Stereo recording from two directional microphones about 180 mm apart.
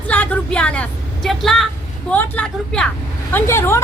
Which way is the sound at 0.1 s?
5° left (ahead or behind).